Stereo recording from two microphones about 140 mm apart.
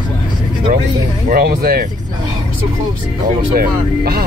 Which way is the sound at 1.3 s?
90° right.